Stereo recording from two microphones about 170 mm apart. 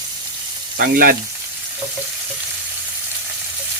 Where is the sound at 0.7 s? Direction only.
60° right (ahead or behind).